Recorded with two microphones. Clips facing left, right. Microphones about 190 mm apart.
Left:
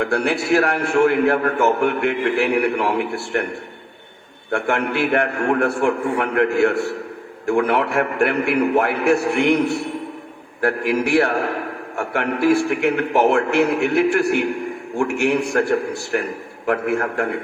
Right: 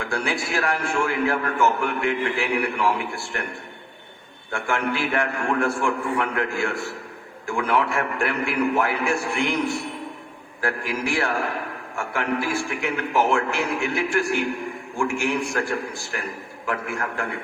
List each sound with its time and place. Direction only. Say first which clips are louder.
0.0 s a man's voice: left 7 dB; 60° left (ahead or behind)
4.5 s a man's voice: left 5 dB; 60° left (ahead or behind)